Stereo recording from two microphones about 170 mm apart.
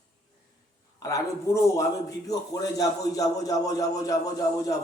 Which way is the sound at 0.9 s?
20° left (ahead or behind).